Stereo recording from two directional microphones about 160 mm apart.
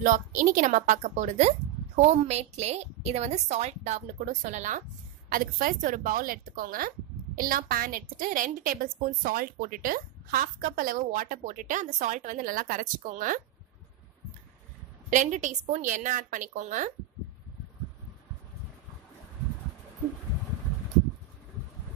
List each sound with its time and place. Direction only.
0.0 s a woman's voice: 55° right (ahead or behind)
5.3 s a woman's voice: 65° right (ahead or behind)
15.0 s a woman's voice: 50° right (ahead or behind)